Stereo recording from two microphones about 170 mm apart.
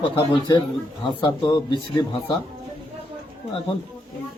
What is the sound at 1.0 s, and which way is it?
Speech, 25° left (ahead or behind).